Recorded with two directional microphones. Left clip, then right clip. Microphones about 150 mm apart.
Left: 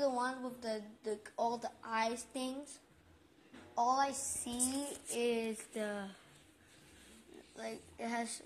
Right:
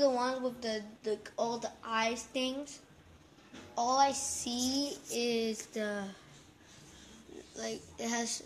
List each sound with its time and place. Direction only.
0.0 s speech: 5° right (ahead or behind)
3.7 s speech: centre (ahead or behind)
4.5 s speech: 20° left (ahead or behind)
5.1 s speech: 15° right (ahead or behind)
7.5 s a child's voice: 20° right (ahead or behind)